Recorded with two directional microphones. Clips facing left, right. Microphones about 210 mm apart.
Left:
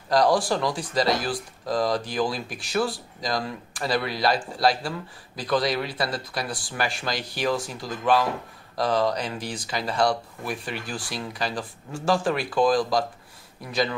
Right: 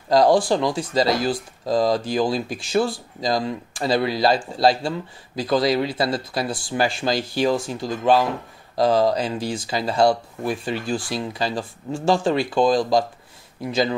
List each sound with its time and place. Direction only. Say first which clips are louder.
0.1 s speech: right 5 dB; 25° right (ahead or behind)